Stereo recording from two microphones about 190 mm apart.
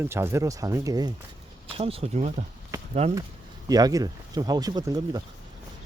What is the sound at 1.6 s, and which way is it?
Speech, 30° right (ahead or behind).